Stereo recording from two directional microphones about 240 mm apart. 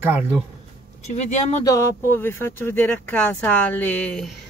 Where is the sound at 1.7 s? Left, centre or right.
Centre.